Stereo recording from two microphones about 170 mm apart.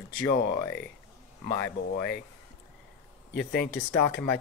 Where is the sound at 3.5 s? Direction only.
65° left (ahead or behind).